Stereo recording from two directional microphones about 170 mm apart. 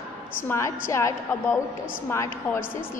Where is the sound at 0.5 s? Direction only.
15° left (ahead or behind).